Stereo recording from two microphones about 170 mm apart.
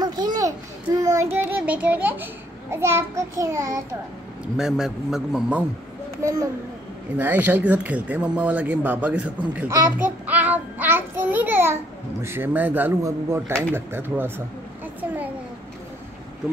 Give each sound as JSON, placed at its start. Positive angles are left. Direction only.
{"t": 0.0, "sound": "a sound", "side_deg": -25}
{"t": 0.9, "sound": "speech", "side_deg": -20}
{"t": 4.6, "sound": "a man's voice", "side_deg": -5}
{"t": 6.2, "sound": "speech", "side_deg": -20}
{"t": 9.6, "sound": "child singing", "side_deg": -15}
{"t": 13.7, "sound": "speech", "side_deg": -15}